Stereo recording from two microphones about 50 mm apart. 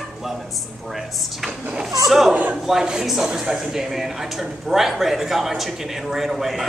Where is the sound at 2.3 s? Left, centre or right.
Right.